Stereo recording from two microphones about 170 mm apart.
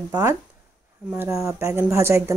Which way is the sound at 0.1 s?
15° right (ahead or behind).